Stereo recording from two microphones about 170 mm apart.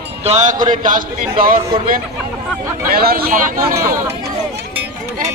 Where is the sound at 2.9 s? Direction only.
60° right (ahead or behind).